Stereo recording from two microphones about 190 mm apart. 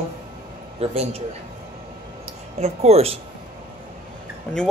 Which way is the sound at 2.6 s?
35° right (ahead or behind).